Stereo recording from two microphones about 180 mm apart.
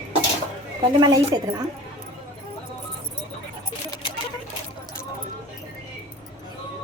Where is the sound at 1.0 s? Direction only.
25° right (ahead or behind).